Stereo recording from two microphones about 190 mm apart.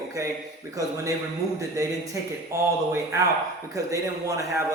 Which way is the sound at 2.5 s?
15° right (ahead or behind).